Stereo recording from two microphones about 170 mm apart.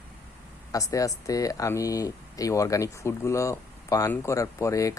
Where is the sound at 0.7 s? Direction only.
20° left (ahead or behind).